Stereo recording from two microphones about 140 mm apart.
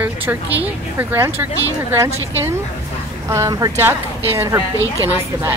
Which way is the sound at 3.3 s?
25° right (ahead or behind).